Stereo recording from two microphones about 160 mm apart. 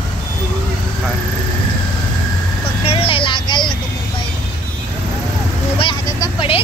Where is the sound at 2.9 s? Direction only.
35° left (ahead or behind).